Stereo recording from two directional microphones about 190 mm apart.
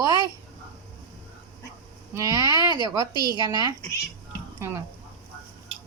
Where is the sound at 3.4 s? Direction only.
20° right (ahead or behind).